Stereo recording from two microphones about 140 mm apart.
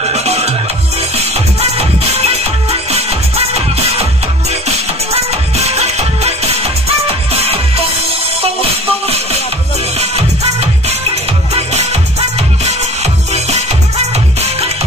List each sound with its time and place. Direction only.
0.1 s music: 50° right (ahead or behind)
9.0 s music: 50° right (ahead or behind)